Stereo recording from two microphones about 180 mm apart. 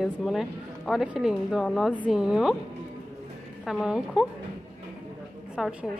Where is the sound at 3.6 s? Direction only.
5° right (ahead or behind).